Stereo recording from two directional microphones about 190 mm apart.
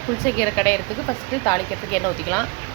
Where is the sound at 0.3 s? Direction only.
15° left (ahead or behind).